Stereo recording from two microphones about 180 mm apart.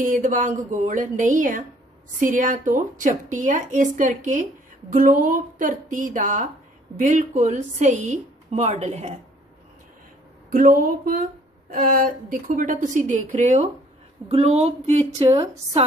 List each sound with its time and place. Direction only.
0.0 s a woman's voice: 45° right (ahead or behind)
10.5 s a woman's voice: 50° right (ahead or behind); by 15.8 s 30° right (ahead or behind)